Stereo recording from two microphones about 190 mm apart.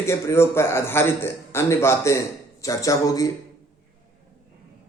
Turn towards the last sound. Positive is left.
turn(degrees=20)  # may be behind; listen again after turning